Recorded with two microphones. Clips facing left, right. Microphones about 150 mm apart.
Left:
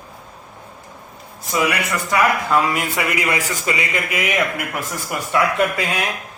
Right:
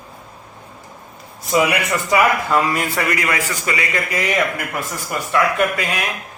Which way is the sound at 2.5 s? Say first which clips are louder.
Even; centre (ahead or behind).